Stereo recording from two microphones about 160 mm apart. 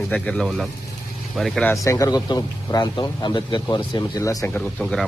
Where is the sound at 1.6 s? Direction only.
20° left (ahead or behind).